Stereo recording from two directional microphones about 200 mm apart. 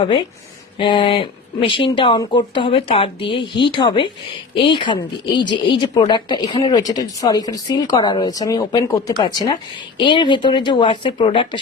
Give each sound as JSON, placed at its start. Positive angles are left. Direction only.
{"t": 0.0, "sound": "speech", "side_deg": 25}